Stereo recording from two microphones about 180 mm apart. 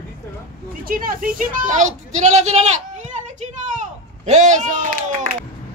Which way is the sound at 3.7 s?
40° right (ahead or behind).